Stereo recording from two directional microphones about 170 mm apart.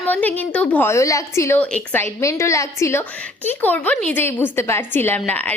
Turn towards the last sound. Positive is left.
turn(degrees=10)  # may be behind; listen again after turning